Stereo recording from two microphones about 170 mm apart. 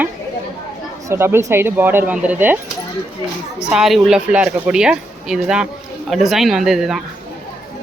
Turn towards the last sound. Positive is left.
turn(degrees=0)  # may be behind; listen again after turning